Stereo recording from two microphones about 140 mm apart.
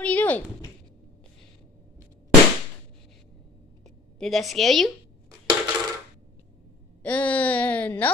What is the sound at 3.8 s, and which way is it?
A woman's voice, centre (ahead or behind).